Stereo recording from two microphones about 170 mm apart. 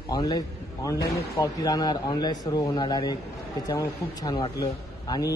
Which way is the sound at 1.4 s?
20° left (ahead or behind).